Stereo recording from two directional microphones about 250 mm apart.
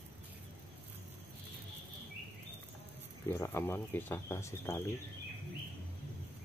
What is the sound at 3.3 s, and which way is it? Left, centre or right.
Speech, centre.